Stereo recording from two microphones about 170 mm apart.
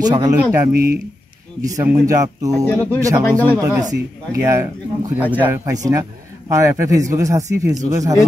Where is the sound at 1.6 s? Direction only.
20° right (ahead or behind).